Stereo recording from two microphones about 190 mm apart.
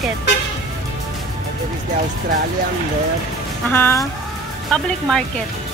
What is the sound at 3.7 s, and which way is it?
Speech, 10° left (ahead or behind).